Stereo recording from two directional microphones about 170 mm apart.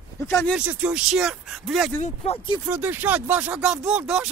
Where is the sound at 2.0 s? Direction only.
35° left (ahead or behind).